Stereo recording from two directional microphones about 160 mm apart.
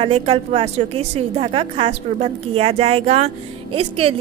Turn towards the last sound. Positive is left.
turn(degrees=-35)  # may be behind; listen again after turning